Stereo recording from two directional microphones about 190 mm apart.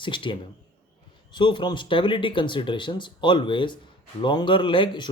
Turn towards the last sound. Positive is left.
turn(degrees=25)  # may be behind; listen again after turning